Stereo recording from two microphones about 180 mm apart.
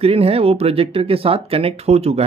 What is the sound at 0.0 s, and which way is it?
Speech, 35° right (ahead or behind).